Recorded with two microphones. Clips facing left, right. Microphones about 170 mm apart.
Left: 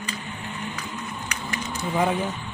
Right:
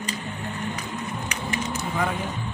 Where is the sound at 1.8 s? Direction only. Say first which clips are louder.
Left 6 dB; 25° left (ahead or behind).